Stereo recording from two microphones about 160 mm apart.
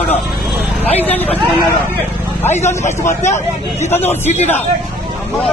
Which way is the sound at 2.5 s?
45° left (ahead or behind).